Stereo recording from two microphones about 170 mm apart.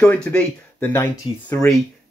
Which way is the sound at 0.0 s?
5° left (ahead or behind).